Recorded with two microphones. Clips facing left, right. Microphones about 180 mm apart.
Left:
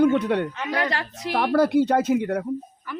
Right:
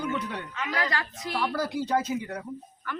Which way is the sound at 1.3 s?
65° left (ahead or behind).